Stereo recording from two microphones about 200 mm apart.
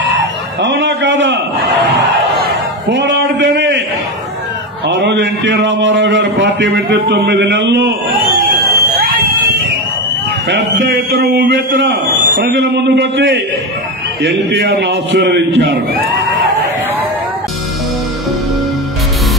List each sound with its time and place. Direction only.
0.6 s a sound: 60° right (ahead or behind)
4.8 s a man's voice: 60° right (ahead or behind)
8.7 s fire alarm: 45° right (ahead or behind)
10.8 s a man's voice: 55° right (ahead or behind)
12.4 s a man's voice: 50° right (ahead or behind)